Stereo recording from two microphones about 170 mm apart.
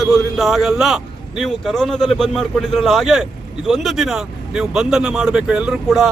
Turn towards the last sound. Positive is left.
turn(degrees=0)  # may be behind; listen again after turning